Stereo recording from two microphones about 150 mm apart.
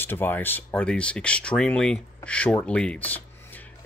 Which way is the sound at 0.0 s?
15° left (ahead or behind).